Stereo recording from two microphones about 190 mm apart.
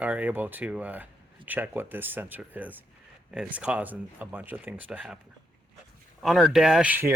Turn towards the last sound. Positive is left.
turn(degrees=-10)  # may be behind; listen again after turning